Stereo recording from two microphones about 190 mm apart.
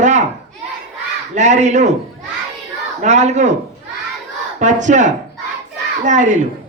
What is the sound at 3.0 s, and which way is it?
Speech, 35° right (ahead or behind).